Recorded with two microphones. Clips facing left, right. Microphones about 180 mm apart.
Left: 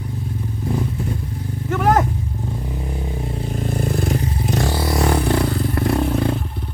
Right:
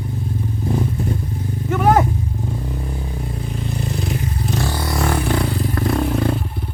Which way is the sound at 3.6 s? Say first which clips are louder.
Left 4 dB; 50° left (ahead or behind).